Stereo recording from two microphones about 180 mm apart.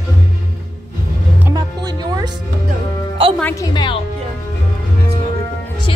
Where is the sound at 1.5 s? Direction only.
25° right (ahead or behind).